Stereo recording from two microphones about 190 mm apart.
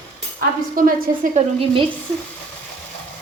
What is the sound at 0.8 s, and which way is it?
Speech, 45° right (ahead or behind).